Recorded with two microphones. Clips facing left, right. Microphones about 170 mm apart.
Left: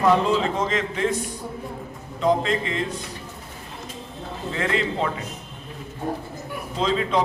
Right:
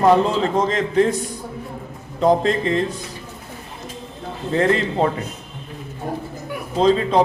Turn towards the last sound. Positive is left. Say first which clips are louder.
# right 6 dB
turn(degrees=-35)  # may be behind; listen again after turning